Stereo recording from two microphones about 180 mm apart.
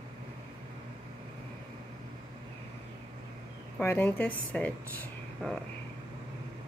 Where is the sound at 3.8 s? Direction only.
10° left (ahead or behind).